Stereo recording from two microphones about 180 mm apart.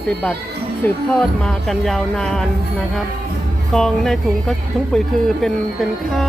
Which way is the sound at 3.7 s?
Centre (ahead or behind).